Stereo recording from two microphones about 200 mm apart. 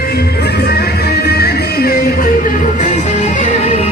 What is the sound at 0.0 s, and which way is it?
Music, 50° left (ahead or behind).